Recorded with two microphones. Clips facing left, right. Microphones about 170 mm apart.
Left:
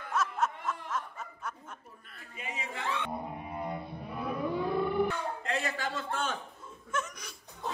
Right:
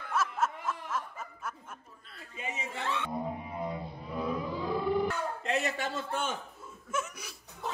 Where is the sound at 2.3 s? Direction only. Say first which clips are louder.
Right 2 dB; 25° right (ahead or behind).